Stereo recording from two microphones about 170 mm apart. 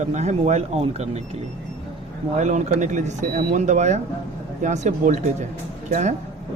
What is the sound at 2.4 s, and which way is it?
A man's voice, 45° right (ahead or behind).